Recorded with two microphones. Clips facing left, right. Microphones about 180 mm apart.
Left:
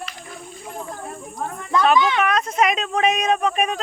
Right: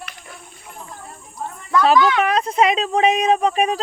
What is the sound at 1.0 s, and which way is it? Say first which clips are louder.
Speech: left 3 dB; 55° left (ahead or behind).